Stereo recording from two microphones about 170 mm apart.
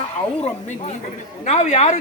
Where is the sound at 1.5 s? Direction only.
40° left (ahead or behind).